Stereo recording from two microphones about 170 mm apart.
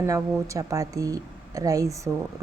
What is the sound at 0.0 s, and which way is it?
A woman's voice, 20° right (ahead or behind).